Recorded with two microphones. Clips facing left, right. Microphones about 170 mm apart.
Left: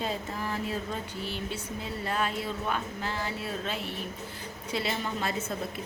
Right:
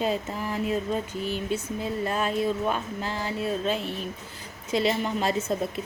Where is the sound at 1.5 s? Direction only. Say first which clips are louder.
Right 7 dB; 25° right (ahead or behind).